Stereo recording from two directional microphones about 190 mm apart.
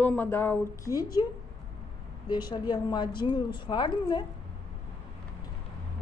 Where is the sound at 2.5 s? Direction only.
25° left (ahead or behind).